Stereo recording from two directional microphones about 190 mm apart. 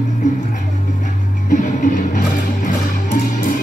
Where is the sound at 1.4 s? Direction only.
45° left (ahead or behind).